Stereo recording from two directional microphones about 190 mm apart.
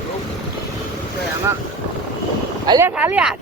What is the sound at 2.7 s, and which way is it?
Speech, 15° right (ahead or behind).